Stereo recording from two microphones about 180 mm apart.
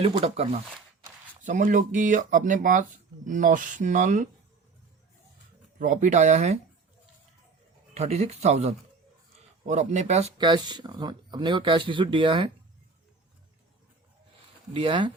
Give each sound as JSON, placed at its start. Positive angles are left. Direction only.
{"t": 0.0, "sound": "speech", "side_deg": -35}
{"t": 1.5, "sound": "speech", "side_deg": -45}
{"t": 5.8, "sound": "speech", "side_deg": -45}
{"t": 7.9, "sound": "speech", "side_deg": -40}
{"t": 10.3, "sound": "speech", "side_deg": -25}
{"t": 14.7, "sound": "speech", "side_deg": -25}